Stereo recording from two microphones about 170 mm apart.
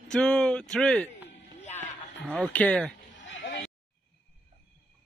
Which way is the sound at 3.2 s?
90° left.